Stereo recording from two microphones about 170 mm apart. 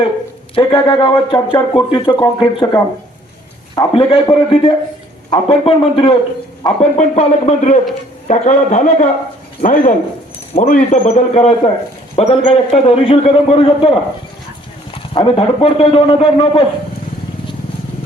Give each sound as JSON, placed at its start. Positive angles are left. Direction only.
{"t": 0.5, "sound": "a man's voice", "side_deg": 30}